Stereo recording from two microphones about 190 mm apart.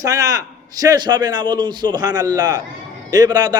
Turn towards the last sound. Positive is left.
turn(degrees=-20)  # may be behind; listen again after turning